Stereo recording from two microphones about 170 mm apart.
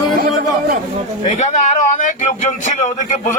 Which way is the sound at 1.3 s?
45° left (ahead or behind).